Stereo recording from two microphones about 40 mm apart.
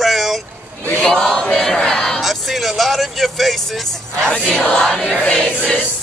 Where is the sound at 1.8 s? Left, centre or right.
Centre.